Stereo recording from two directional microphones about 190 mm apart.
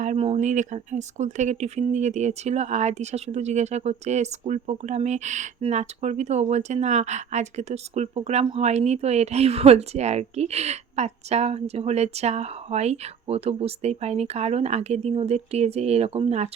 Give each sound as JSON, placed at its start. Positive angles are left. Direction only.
{"t": 0.0, "sound": "speech", "side_deg": -35}